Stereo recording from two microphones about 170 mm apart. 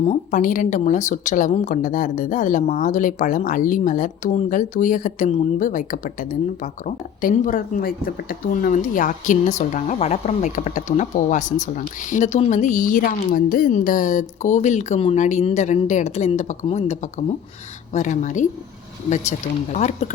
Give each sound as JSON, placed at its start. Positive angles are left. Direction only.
{"t": 0.1, "sound": "speech", "side_deg": 50}
{"t": 19.7, "sound": "speech", "side_deg": 45}